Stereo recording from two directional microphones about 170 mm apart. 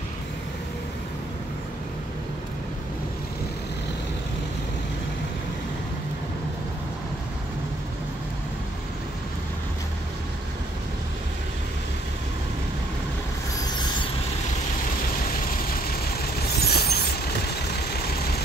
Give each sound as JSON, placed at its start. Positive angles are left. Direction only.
{"t": 16.5, "sound": "vehicle", "side_deg": 70}